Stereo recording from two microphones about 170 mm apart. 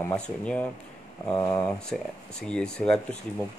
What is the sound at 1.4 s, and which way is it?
Speech, 20° left (ahead or behind).